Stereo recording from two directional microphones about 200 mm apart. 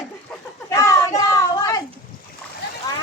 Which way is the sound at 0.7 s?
15° left (ahead or behind).